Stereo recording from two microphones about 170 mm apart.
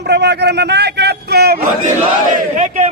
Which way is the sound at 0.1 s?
80° right.